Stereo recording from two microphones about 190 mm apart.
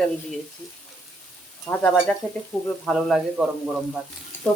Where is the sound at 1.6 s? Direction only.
5° left (ahead or behind).